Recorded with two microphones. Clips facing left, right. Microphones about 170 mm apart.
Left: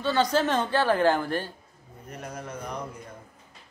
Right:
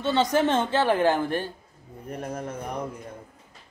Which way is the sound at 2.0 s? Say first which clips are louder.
Right 5 dB; 55° right (ahead or behind).